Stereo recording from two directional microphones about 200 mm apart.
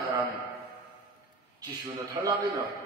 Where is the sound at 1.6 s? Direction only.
20° right (ahead or behind).